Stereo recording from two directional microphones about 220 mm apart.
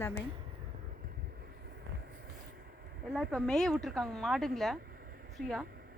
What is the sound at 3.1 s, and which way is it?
A woman's voice, 5° left (ahead or behind).